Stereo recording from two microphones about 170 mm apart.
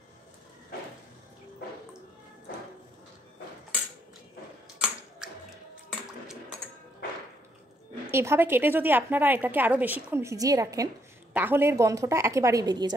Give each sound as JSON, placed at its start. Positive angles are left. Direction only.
{"t": 8.1, "sound": "a woman's voice", "side_deg": -15}